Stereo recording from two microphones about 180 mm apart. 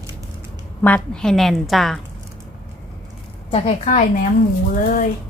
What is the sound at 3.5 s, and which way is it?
A woman's voice, 40° left (ahead or behind).